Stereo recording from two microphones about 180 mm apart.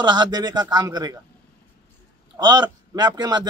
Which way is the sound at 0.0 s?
25° right (ahead or behind).